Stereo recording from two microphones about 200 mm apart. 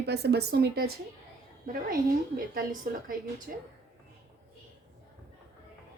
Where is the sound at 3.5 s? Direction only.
45° right (ahead or behind).